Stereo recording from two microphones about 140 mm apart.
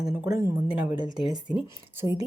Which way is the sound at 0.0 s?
5° right (ahead or behind).